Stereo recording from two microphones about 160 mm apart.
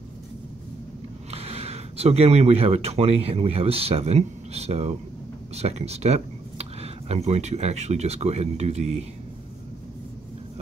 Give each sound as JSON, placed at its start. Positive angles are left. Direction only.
{"t": 1.3, "sound": "speech", "side_deg": -40}